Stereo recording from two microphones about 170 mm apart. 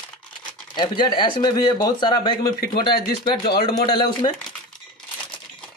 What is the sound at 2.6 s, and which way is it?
Speech, 65° left (ahead or behind).